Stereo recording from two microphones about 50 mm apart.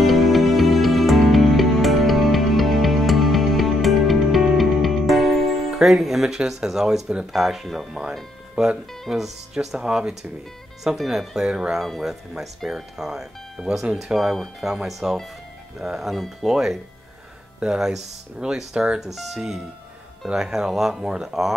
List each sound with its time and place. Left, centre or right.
0.0 s music: centre
7.3 s speech: centre
8.6 s speech: centre